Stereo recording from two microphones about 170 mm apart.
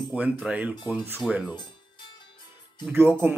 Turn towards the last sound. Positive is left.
turn(degrees=-10)  # may be behind; listen again after turning